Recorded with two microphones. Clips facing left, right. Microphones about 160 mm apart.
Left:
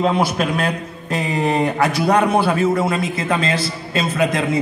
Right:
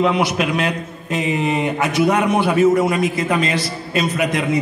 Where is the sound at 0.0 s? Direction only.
35° left (ahead or behind).